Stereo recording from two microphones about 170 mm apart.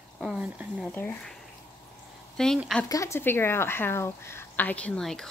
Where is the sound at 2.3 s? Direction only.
5° left (ahead or behind).